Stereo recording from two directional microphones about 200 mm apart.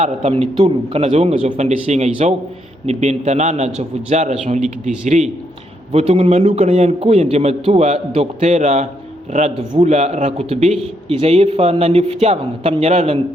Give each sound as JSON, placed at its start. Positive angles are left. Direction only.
{"t": 0.0, "sound": "a man's voice", "side_deg": -30}
{"t": 5.9, "sound": "a man's voice", "side_deg": -30}